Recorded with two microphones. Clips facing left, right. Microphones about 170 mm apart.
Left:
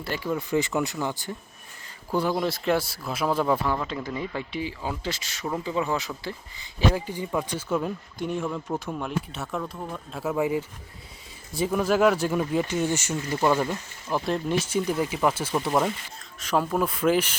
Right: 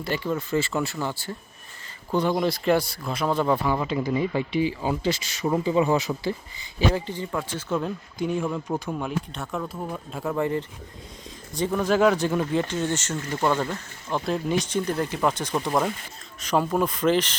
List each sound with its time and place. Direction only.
0.0 s speech: 10° left (ahead or behind)
5.6 s speech: 10° right (ahead or behind)
6.7 s speech: 10° left (ahead or behind)